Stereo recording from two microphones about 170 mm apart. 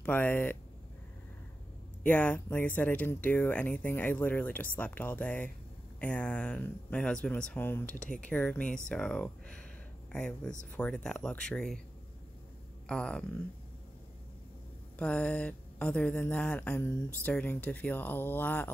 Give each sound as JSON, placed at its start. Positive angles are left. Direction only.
{"t": 0.0, "sound": "speech", "side_deg": 10}
{"t": 2.0, "sound": "speech", "side_deg": 10}
{"t": 12.8, "sound": "speech", "side_deg": 5}
{"t": 15.0, "sound": "speech", "side_deg": 5}